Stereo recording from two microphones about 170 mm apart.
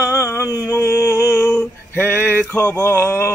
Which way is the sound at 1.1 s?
15° left (ahead or behind).